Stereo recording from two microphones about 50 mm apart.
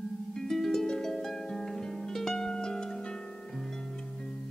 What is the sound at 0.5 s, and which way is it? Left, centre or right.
Music, centre.